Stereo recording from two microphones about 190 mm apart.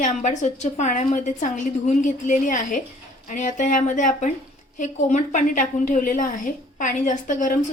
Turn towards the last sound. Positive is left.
turn(degrees=40)  # may be behind; listen again after turning